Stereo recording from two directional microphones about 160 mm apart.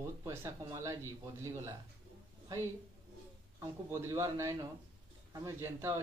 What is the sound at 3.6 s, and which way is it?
Speech, 15° right (ahead or behind).